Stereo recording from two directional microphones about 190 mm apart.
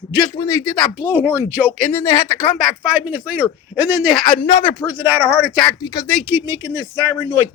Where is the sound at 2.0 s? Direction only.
15° left (ahead or behind).